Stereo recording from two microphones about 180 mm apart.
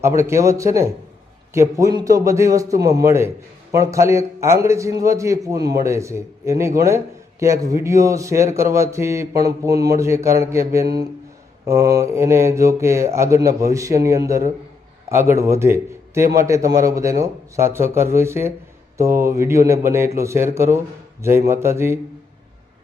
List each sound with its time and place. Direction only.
0.2 s a man's voice: 15° right (ahead or behind)